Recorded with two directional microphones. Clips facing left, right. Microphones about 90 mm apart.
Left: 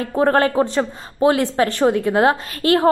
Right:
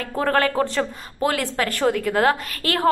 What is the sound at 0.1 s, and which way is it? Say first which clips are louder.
Speech: left 4 dB; 25° left (ahead or behind).